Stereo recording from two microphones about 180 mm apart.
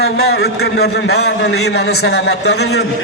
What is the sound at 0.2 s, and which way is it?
A man's voice, 65° left (ahead or behind).